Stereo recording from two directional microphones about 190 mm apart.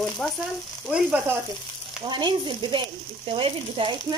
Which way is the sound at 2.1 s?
25° right (ahead or behind).